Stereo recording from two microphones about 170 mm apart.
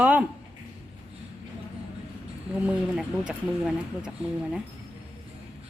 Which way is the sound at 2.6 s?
5° right (ahead or behind).